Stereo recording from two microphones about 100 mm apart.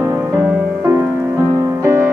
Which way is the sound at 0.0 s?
25° right (ahead or behind).